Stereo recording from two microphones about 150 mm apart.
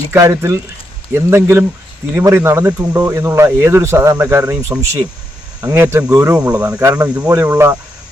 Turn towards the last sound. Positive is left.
turn(degrees=-20)  # may be behind; listen again after turning